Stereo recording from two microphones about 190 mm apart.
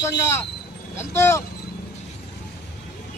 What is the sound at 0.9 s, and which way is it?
Speech, 15° left (ahead or behind).